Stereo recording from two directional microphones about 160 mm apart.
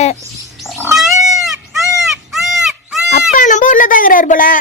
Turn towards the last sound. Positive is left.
turn(degrees=60)  # may be behind; listen again after turning